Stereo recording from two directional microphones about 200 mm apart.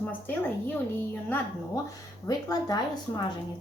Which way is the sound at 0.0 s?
10° left (ahead or behind).